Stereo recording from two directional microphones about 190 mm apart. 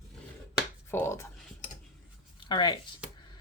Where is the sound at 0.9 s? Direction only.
15° left (ahead or behind).